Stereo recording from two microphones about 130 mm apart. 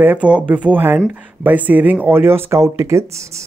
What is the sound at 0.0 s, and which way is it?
Speech, 10° right (ahead or behind).